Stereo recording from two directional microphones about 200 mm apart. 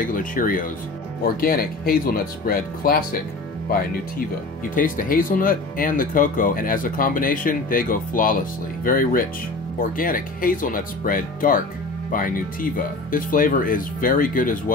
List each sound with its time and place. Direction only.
0.0 s speech: 40° left (ahead or behind)
4.7 s speech: 45° left (ahead or behind)